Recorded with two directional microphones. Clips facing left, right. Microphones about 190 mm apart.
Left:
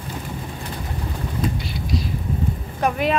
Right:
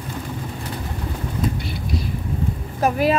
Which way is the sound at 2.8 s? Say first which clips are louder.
Right 3 dB; 35° right (ahead or behind).